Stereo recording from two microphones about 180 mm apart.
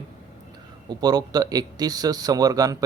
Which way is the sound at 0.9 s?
20° right (ahead or behind).